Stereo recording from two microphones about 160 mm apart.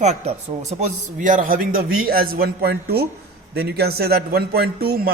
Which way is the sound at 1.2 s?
55° right (ahead or behind).